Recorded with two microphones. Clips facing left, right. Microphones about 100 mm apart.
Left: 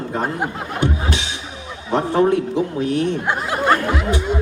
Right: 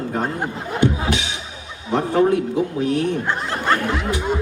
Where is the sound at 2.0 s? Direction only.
25° left (ahead or behind).